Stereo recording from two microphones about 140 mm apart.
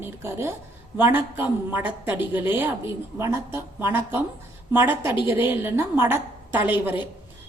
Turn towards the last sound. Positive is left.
turn(degrees=-15)  # may be behind; listen again after turning